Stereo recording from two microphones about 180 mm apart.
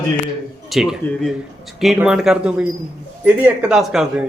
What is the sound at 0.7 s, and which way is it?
Speech, centre (ahead or behind).